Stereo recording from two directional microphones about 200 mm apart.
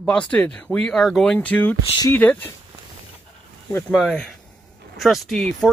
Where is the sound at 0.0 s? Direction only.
5° left (ahead or behind).